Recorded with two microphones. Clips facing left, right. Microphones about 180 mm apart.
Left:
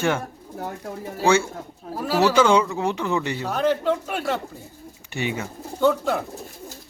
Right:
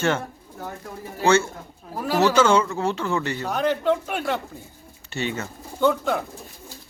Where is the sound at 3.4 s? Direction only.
Centre (ahead or behind).